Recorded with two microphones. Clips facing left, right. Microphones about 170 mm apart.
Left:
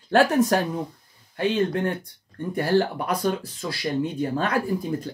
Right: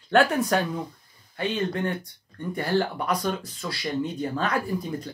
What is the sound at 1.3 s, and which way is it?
Speech, 50° left (ahead or behind).